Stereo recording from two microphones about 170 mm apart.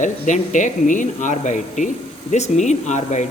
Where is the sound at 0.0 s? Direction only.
45° left (ahead or behind).